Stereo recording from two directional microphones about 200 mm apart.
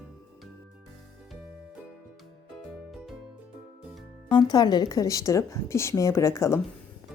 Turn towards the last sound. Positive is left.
turn(degrees=15)  # may be behind; listen again after turning